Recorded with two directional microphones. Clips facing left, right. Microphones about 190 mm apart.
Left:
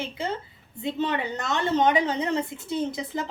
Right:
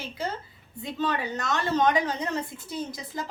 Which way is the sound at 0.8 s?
25° left (ahead or behind).